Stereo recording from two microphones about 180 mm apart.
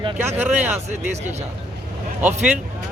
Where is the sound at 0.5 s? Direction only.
40° right (ahead or behind).